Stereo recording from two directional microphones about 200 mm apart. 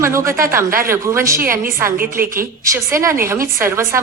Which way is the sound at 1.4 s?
45° right (ahead or behind).